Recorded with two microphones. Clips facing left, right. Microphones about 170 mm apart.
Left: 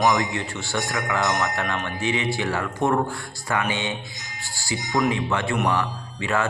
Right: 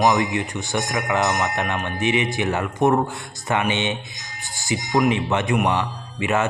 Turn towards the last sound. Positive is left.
turn(degrees=-20)  # may be behind; listen again after turning